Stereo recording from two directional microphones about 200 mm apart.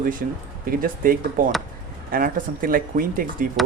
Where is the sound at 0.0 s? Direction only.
45° right (ahead or behind).